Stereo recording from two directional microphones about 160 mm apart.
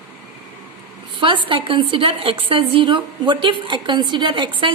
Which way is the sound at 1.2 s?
30° right (ahead or behind).